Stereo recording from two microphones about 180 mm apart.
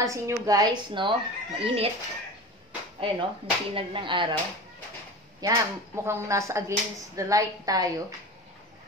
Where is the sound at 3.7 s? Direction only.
30° right (ahead or behind).